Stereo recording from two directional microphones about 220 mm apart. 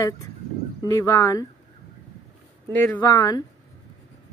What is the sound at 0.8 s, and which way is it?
Speech, 15° left (ahead or behind).